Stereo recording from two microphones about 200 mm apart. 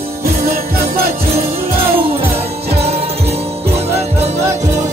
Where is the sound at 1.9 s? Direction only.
30° right (ahead or behind).